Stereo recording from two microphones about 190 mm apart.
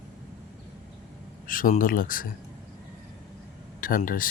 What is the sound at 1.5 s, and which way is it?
Speech, 45° left (ahead or behind).